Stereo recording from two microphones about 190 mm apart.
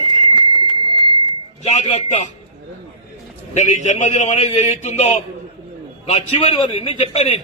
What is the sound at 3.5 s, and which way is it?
A man's voice, 40° left (ahead or behind).